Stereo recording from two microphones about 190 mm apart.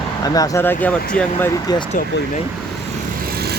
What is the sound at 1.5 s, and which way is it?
Speech, 20° left (ahead or behind).